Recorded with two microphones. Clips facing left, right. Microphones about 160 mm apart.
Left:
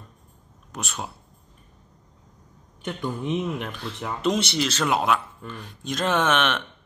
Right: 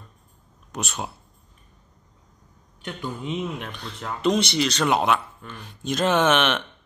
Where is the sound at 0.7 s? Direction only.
Centre (ahead or behind).